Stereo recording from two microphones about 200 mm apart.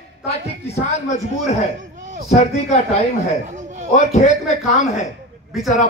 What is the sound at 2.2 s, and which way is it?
Speech, 35° left (ahead or behind).